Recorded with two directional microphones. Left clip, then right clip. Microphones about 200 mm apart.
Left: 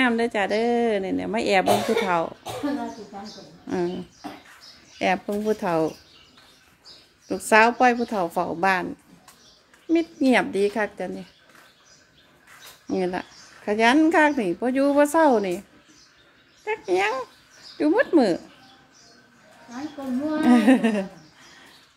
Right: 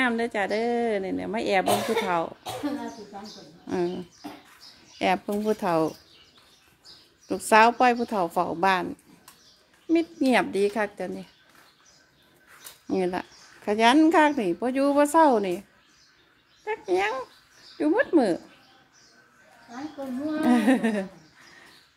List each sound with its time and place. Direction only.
0.0 s a woman's voice: centre (ahead or behind)
3.6 s a woman's voice: 15° right (ahead or behind)
7.2 s a woman's voice: 20° right (ahead or behind)
9.8 s a woman's voice: 15° right (ahead or behind)
12.8 s a woman's voice: 15° right (ahead or behind)
16.6 s a woman's voice: 5° right (ahead or behind)
20.3 s speech: centre (ahead or behind)